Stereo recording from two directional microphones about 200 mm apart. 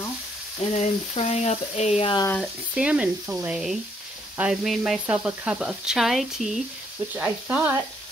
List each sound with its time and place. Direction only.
0.7 s frying: 35° left (ahead or behind)
2.4 s sizzle: 5° right (ahead or behind)
7.2 s speech: 5° right (ahead or behind)